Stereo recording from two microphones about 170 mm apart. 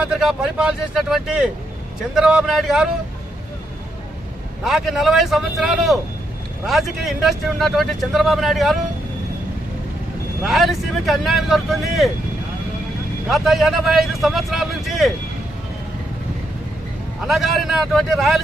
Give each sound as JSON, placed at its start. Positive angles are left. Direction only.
{"t": 0.0, "sound": "speech", "side_deg": -5}
{"t": 4.6, "sound": "speech", "side_deg": 0}
{"t": 10.4, "sound": "speech", "side_deg": 0}
{"t": 13.3, "sound": "speech", "side_deg": 0}
{"t": 17.3, "sound": "speech", "side_deg": 0}